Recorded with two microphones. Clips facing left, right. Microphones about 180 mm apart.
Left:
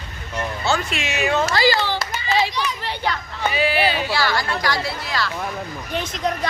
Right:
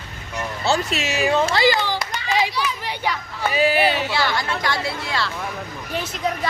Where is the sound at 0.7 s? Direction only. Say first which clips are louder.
Right 3 dB; 40° right (ahead or behind); by 2.0 s 15° right (ahead or behind).